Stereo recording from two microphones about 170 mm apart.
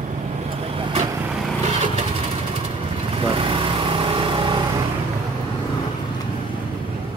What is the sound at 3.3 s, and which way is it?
Vehicle, 30° right (ahead or behind).